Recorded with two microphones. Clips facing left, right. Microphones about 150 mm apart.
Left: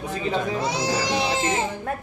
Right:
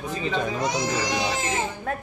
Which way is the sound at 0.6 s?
30° left (ahead or behind).